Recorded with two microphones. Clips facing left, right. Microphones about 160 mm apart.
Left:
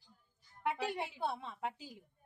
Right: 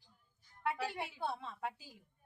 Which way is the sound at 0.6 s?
20° left (ahead or behind).